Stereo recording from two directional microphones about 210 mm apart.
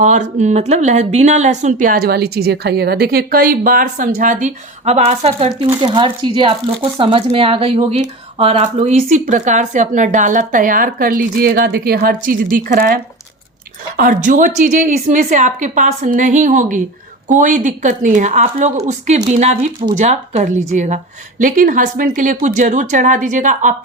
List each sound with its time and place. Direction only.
0.0 s speech: 35° right (ahead or behind)